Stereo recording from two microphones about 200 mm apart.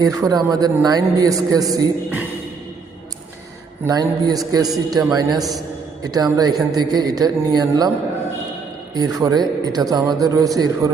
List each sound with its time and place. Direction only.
0.0 s a man's voice: 20° right (ahead or behind)
3.8 s a man's voice: 20° right (ahead or behind)
5.4 s a man's voice: centre (ahead or behind)
6.0 s a man's voice: 20° right (ahead or behind)
9.0 s a man's voice: 20° right (ahead or behind)